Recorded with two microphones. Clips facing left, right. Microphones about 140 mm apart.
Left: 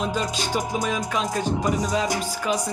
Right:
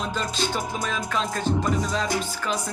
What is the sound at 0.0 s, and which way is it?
Music, 10° left (ahead or behind).